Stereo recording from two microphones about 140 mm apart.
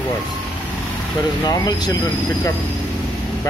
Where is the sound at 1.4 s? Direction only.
30° left (ahead or behind).